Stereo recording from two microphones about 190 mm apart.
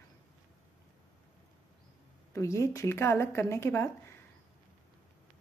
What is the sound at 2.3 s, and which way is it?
Speech, 15° left (ahead or behind).